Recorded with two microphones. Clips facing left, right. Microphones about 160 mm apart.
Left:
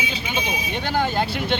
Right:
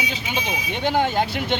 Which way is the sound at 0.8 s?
15° right (ahead or behind).